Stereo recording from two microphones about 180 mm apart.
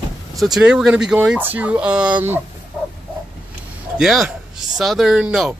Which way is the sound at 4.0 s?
Centre (ahead or behind).